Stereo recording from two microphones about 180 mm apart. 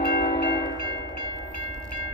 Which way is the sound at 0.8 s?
25° right (ahead or behind).